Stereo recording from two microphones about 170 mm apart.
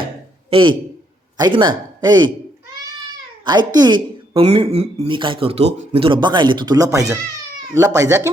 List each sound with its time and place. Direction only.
0.5 s a man's voice: 30° right (ahead or behind)
3.4 s a woman's voice: 25° right (ahead or behind)
4.7 s a man's voice: 40° right (ahead or behind); by 8.3 s 20° right (ahead or behind)